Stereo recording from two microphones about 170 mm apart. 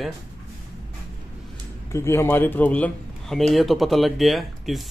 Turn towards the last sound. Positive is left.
turn(degrees=0)  # may be behind; listen again after turning